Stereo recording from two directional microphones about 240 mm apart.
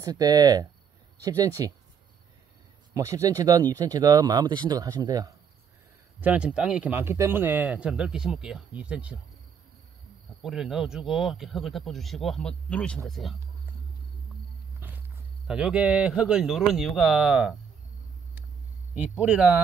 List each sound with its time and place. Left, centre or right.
0.0 s speech: centre
2.9 s speech: centre
10.4 s speech: centre
14.8 s walk: centre
15.4 s speech: centre
18.9 s speech: centre